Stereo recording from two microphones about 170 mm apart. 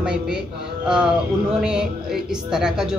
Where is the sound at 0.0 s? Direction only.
5° right (ahead or behind).